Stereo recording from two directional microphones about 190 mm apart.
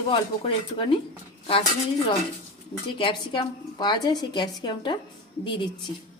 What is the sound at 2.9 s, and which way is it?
A woman's voice, 25° left (ahead or behind).